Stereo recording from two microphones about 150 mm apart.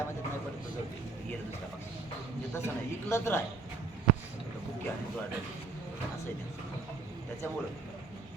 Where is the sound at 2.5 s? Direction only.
15° left (ahead or behind).